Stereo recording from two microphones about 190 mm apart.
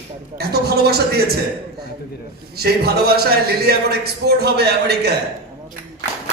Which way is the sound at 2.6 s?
55° right (ahead or behind).